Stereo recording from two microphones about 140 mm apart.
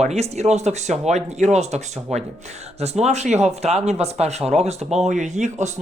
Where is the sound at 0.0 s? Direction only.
50° right (ahead or behind).